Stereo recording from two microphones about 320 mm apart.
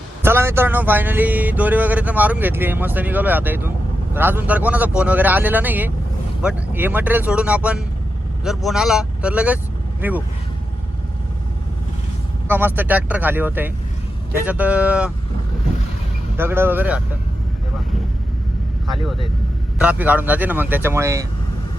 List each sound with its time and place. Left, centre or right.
0.2 s speech: centre
12.5 s speech: centre
16.4 s speech: centre
19.8 s speech: centre